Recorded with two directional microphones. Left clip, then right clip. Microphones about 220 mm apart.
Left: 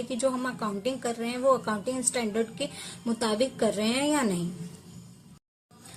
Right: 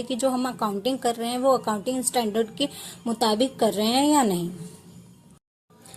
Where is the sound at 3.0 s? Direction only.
20° right (ahead or behind).